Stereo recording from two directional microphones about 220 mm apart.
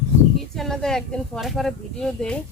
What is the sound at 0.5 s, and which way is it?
Speech, centre (ahead or behind).